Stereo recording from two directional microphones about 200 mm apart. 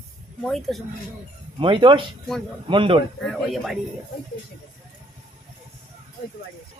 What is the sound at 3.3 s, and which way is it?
Speech, centre (ahead or behind).